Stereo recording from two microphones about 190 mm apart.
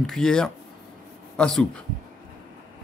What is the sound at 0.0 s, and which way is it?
A man's voice, centre (ahead or behind).